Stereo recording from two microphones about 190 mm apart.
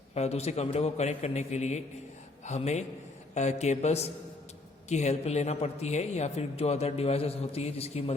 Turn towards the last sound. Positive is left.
turn(degrees=35)  # may be behind; listen again after turning